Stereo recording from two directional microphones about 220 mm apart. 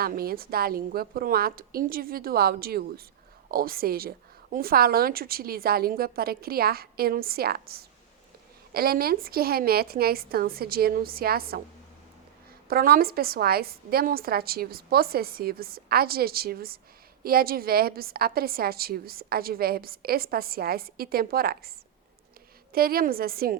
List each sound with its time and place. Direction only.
0.0 s a woman's voice: 45° right (ahead or behind)
12.6 s a woman's voice: 40° right (ahead or behind)
22.7 s a woman's voice: 40° right (ahead or behind)